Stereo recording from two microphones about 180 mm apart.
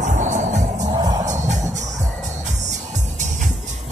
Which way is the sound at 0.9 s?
20° right (ahead or behind).